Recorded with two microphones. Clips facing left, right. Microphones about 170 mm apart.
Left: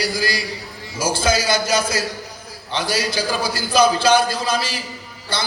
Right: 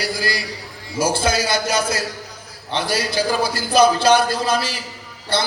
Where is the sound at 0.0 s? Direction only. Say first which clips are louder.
Left 1 dB; 60° right (ahead or behind).